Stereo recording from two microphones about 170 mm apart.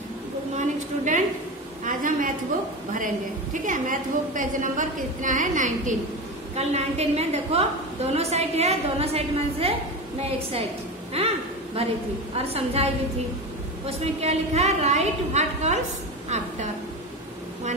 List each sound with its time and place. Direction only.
0.6 s a sound: 45° right (ahead or behind)
1.9 s a woman's voice: 50° right (ahead or behind)
3.6 s a woman's voice: 50° right (ahead or behind)
11.8 s a woman's voice: 35° right (ahead or behind)